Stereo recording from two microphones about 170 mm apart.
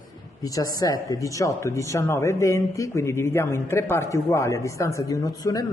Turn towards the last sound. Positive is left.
turn(degrees=20)  # may be behind; listen again after turning